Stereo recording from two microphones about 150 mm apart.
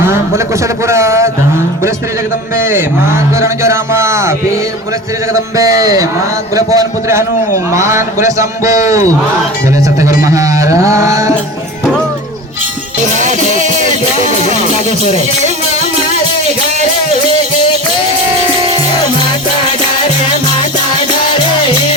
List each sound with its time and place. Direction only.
0.0 s a man's voice: 15° right (ahead or behind)
2.6 s a man's voice: 15° right (ahead or behind)
10.2 s a man's voice: 20° right (ahead or behind)
14.6 s music: 40° left (ahead or behind)